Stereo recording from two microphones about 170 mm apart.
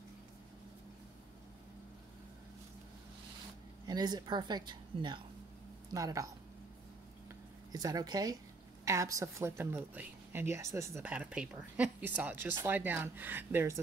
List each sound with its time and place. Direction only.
3.8 s speech: 25° right (ahead or behind)
7.7 s a woman's voice: 20° right (ahead or behind)